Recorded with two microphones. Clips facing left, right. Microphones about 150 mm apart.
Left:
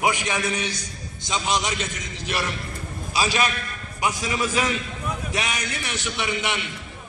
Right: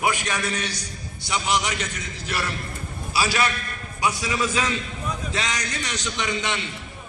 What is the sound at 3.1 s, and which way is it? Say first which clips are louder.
A man's voice: even; 20° left (ahead or behind).